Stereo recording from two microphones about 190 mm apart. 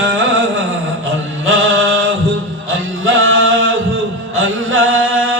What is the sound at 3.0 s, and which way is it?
Music, 90° right.